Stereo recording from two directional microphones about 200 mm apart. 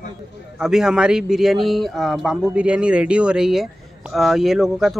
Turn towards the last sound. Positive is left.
turn(degrees=0)  # may be behind; listen again after turning